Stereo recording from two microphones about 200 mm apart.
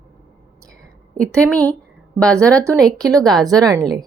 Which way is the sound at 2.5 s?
15° right (ahead or behind).